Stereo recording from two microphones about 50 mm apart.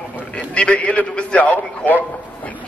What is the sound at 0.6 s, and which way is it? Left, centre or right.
A man's voice, left.